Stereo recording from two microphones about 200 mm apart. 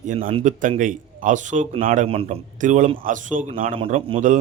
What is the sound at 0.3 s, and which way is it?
Speech, 30° right (ahead or behind).